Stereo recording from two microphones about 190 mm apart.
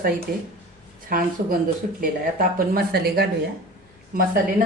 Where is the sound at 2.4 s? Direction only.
50° right (ahead or behind).